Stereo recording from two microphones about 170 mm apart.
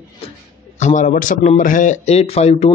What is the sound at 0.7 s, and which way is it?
A man's voice, 45° left (ahead or behind).